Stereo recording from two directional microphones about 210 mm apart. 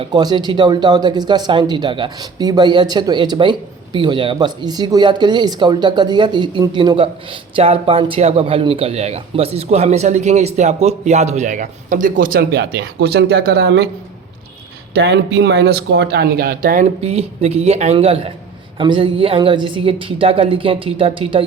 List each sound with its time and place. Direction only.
0.0 s speech: 20° right (ahead or behind); by 13.8 s 50° right (ahead or behind)
14.9 s speech: 55° right (ahead or behind); by 21.4 s 25° right (ahead or behind)